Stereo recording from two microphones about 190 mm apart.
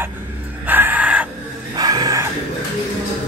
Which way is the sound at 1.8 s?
20° right (ahead or behind).